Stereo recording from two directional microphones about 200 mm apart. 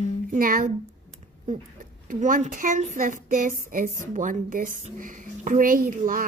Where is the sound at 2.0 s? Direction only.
40° right (ahead or behind).